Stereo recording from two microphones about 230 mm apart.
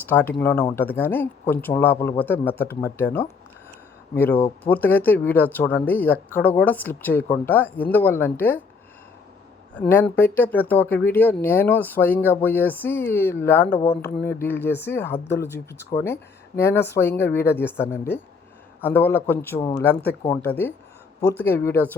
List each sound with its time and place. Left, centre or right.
0.0 s speech: centre
9.7 s speech: centre
13.7 s speech: left
14.2 s speech: centre
19.5 s speech: centre